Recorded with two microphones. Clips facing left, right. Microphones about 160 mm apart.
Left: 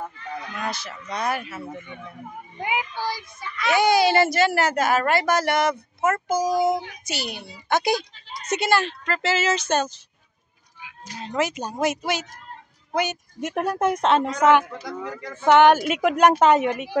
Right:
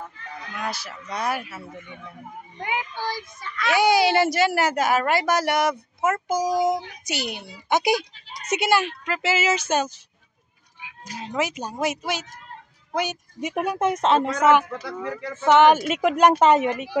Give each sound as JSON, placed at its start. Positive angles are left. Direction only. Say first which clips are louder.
{"t": 0.6, "sound": "a woman's voice", "louder": "right 3 dB", "side_deg": -5}
{"t": 2.6, "sound": "a child's voice", "louder": "left 2 dB", "side_deg": 15}
{"t": 3.7, "sound": "a woman's voice", "louder": "even", "side_deg": -10}
{"t": 11.1, "sound": "speech", "louder": "left 1 dB", "side_deg": -5}